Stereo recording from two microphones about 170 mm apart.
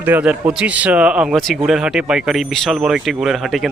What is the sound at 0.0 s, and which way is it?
Speech, 10° right (ahead or behind).